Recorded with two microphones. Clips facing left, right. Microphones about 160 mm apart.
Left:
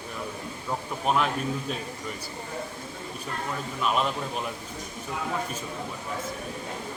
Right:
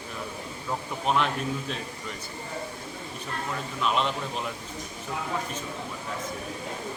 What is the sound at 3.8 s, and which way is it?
Speech, 5° left (ahead or behind).